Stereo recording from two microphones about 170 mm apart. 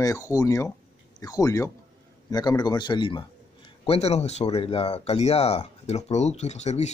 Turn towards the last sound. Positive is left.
turn(degrees=40)  # may be behind; listen again after turning